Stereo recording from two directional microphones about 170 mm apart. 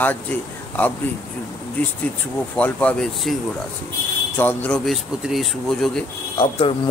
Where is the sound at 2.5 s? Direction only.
10° left (ahead or behind).